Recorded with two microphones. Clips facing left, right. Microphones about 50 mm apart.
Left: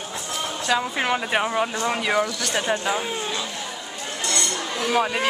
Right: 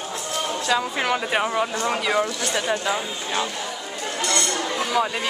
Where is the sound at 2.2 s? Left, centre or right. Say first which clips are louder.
Right 1 dB; right.